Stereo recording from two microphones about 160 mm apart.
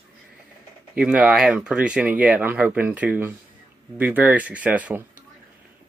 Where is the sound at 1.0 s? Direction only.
5° right (ahead or behind).